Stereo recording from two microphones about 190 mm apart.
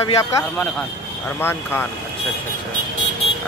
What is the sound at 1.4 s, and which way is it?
Speech, 10° left (ahead or behind).